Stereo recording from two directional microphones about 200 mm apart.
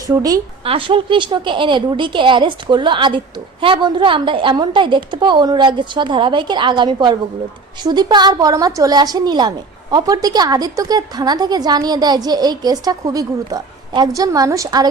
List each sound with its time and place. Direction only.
0.1 s a woman's voice: 15° right (ahead or behind)